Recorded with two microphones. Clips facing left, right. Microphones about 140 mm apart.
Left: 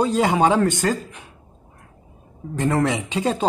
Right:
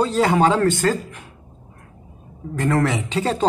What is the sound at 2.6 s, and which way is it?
Speech, 20° left (ahead or behind).